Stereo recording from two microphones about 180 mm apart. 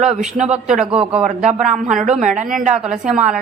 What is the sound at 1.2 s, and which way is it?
A woman's voice, 40° right (ahead or behind).